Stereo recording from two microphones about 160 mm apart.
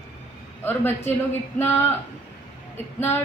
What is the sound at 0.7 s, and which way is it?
Speech, 15° left (ahead or behind).